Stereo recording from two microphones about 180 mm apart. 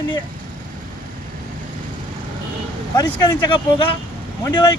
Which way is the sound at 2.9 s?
20° left (ahead or behind).